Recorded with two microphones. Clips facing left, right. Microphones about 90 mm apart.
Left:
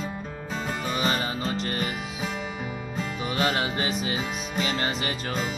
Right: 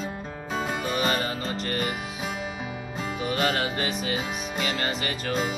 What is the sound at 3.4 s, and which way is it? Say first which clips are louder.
Music: left 1 dB; 20° left (ahead or behind).